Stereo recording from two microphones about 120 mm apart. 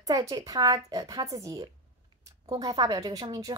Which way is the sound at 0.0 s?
30° right (ahead or behind).